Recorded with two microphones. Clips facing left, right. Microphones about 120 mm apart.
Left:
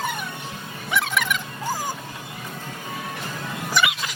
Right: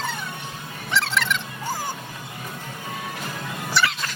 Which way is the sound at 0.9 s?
10° left (ahead or behind).